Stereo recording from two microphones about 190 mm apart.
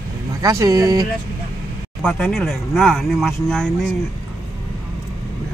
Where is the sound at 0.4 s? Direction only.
20° right (ahead or behind).